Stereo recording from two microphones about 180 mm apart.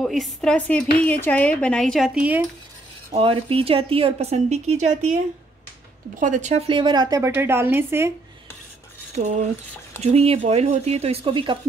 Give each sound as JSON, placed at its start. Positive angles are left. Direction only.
{"t": 0.0, "sound": "speech", "side_deg": 0}
{"t": 3.1, "sound": "a woman's voice", "side_deg": -30}
{"t": 6.1, "sound": "a woman's voice", "side_deg": -45}
{"t": 9.1, "sound": "a woman's voice", "side_deg": -40}